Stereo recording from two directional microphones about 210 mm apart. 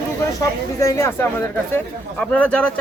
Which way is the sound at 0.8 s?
15° left (ahead or behind).